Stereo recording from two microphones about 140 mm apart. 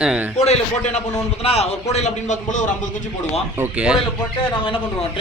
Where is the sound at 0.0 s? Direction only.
5° right (ahead or behind).